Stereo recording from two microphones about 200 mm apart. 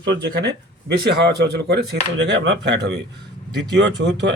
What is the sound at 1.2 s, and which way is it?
A man's voice, 55° right (ahead or behind).